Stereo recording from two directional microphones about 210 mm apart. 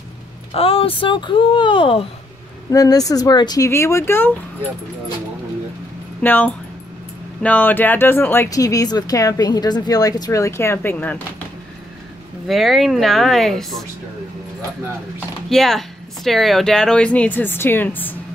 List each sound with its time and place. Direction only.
0.5 s speech: 25° left (ahead or behind); by 4.3 s 10° left (ahead or behind)
6.2 s speech: 10° left (ahead or behind)
12.4 s speech: centre (ahead or behind)
15.1 s speech: centre (ahead or behind)